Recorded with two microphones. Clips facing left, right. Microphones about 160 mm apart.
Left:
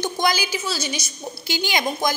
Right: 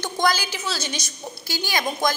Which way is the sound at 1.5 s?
20° left (ahead or behind).